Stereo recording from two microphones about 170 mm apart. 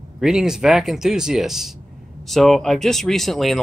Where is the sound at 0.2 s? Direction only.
5° right (ahead or behind).